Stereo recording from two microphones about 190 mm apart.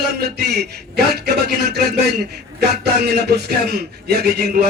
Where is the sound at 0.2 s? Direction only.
60° right (ahead or behind).